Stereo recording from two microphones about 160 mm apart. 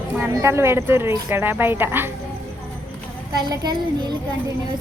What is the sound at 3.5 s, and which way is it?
Speech, 25° right (ahead or behind).